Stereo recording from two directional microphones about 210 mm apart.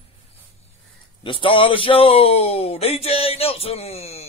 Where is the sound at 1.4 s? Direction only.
25° left (ahead or behind).